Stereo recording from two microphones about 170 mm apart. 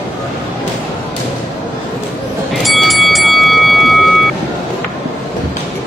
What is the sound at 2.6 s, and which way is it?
Music, centre (ahead or behind).